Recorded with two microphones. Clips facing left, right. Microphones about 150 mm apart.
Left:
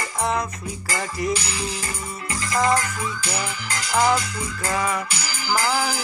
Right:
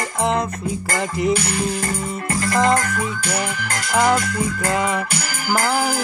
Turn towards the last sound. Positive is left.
turn(degrees=-50)  # may be behind; listen again after turning